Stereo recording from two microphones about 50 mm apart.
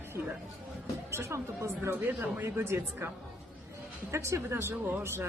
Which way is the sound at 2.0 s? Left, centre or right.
Right.